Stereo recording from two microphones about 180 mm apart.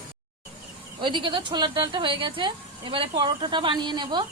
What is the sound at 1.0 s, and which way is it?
A woman's voice, 30° right (ahead or behind).